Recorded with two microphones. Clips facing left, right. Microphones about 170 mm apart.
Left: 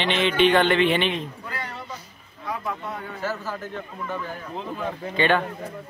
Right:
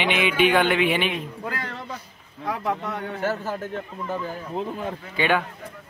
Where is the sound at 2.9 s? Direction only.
70° right (ahead or behind).